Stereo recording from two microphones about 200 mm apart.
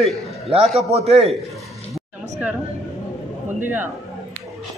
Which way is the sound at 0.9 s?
30° right (ahead or behind).